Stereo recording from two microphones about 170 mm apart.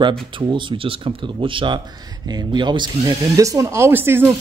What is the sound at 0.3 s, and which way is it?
Speech, 30° right (ahead or behind).